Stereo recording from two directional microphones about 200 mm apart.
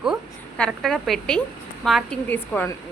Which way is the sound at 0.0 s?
Centre (ahead or behind).